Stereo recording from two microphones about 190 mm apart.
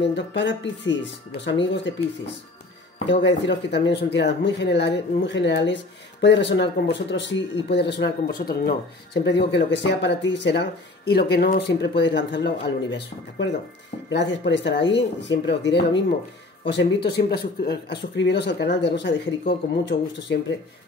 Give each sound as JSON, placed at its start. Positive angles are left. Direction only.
{"t": 0.0, "sound": "speech", "side_deg": 65}